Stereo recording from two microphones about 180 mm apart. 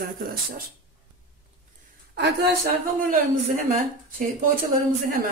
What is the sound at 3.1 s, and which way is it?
Speech, 50° right (ahead or behind).